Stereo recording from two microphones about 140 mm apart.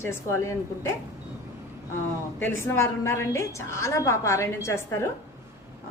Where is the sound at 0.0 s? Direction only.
20° left (ahead or behind).